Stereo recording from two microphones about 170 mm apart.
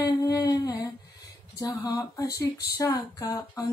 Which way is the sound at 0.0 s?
20° left (ahead or behind).